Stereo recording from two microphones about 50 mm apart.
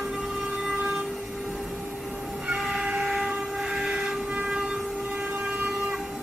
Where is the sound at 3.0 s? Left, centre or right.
Centre.